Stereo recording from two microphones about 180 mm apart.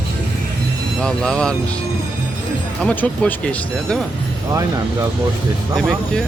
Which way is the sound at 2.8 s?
5° left (ahead or behind).